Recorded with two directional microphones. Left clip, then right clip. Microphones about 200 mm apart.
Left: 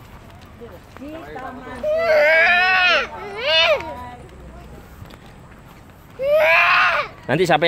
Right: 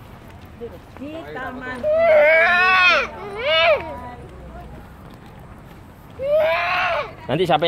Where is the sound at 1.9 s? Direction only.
40° left (ahead or behind).